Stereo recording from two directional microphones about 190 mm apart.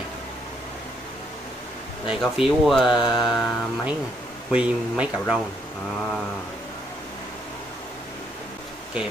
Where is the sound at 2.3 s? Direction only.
Centre (ahead or behind).